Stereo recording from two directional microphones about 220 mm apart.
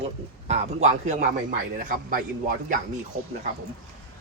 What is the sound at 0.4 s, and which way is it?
A man's voice, 30° right (ahead or behind).